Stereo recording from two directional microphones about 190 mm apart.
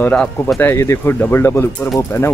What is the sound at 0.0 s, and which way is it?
Speech, 5° left (ahead or behind).